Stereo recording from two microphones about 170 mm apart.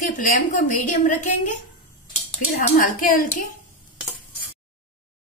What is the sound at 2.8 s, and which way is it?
Speech, 55° left (ahead or behind).